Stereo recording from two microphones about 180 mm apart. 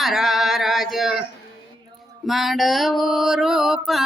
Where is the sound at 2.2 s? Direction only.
Centre (ahead or behind).